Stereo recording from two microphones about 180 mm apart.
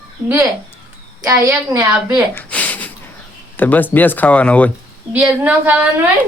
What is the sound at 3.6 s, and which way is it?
Speech, 10° left (ahead or behind).